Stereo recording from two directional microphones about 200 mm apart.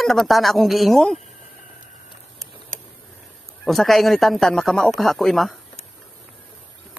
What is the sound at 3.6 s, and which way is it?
Speech, centre (ahead or behind).